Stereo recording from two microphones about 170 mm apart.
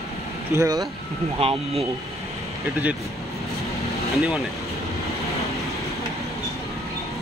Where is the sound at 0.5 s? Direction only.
20° right (ahead or behind).